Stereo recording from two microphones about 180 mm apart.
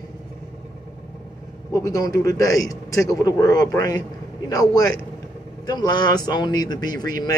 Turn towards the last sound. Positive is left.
turn(degrees=20)  # may be behind; listen again after turning